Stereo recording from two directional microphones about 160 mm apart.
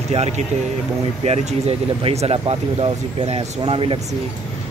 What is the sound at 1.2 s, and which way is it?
Speech, 40° right (ahead or behind).